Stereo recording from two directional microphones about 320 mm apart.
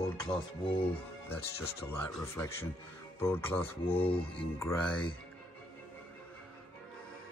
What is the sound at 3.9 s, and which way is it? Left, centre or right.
Speech, centre.